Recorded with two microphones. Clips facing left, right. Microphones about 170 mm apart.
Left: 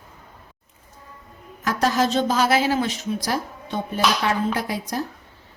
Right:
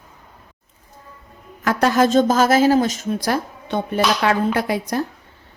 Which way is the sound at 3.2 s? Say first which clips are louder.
Right 4 dB; 60° right (ahead or behind).